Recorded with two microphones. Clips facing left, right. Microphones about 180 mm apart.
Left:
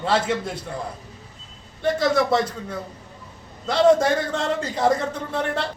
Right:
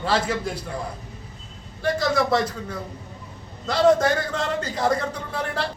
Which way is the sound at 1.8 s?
25° left (ahead or behind).